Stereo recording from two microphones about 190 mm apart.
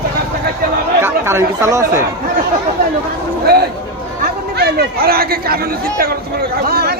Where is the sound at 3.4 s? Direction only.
55° right (ahead or behind).